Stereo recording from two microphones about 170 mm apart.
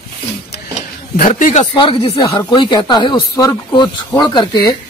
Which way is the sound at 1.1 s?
45° left (ahead or behind).